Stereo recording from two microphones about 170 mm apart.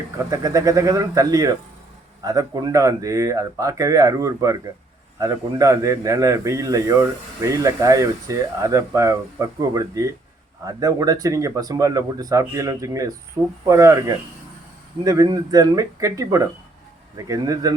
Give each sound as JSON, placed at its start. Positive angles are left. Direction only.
{"t": 0.2, "sound": "a man's voice", "side_deg": -20}